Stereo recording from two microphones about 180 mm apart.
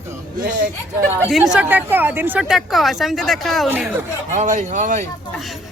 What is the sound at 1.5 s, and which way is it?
Speech, 10° right (ahead or behind).